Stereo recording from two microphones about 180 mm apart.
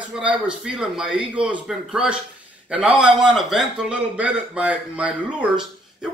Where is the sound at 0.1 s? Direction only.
5° right (ahead or behind).